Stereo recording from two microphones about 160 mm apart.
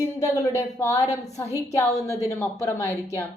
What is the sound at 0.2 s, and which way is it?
A woman's voice, 20° left (ahead or behind).